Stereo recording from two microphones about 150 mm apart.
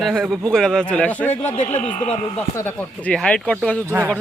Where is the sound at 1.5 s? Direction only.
45° left (ahead or behind).